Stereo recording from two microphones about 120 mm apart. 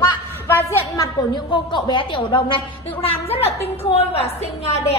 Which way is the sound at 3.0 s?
55° left (ahead or behind).